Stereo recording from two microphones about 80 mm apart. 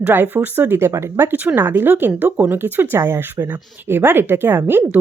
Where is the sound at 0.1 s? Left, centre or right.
Right.